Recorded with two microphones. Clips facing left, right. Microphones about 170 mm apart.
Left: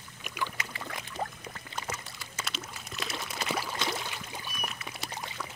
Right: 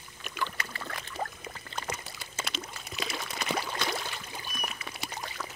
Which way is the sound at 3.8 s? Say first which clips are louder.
Even; 20° left (ahead or behind).